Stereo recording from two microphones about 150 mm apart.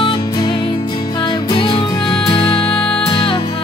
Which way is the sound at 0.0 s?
30° left (ahead or behind).